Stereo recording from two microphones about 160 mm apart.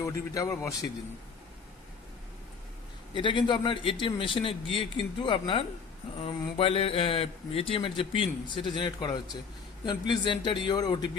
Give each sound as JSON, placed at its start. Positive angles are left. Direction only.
{"t": 0.0, "sound": "speech", "side_deg": 15}
{"t": 3.1, "sound": "a man's voice", "side_deg": 30}